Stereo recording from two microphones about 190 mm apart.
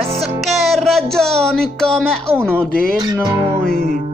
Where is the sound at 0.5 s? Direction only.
Centre (ahead or behind).